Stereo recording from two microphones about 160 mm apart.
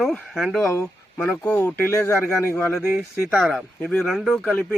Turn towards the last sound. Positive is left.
turn(degrees=5)  # may be behind; listen again after turning